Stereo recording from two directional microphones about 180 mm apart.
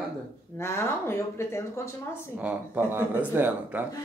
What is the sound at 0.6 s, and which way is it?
A woman's voice, 15° left (ahead or behind).